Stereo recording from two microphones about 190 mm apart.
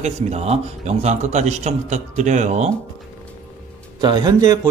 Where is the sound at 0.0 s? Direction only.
35° right (ahead or behind).